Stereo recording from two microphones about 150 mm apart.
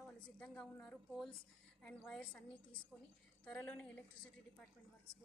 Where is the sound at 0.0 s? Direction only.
5° left (ahead or behind).